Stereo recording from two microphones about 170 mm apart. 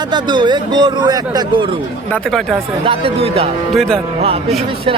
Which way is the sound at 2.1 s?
Centre (ahead or behind).